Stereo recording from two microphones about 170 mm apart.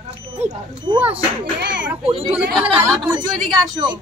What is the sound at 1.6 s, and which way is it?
Speech, 85° right.